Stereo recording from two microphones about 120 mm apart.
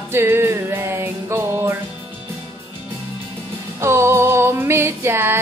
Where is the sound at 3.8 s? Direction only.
20° right (ahead or behind).